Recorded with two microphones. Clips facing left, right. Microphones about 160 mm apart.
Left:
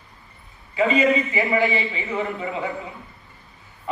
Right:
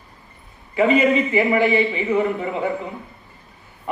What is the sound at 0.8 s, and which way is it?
Speech, 55° right (ahead or behind).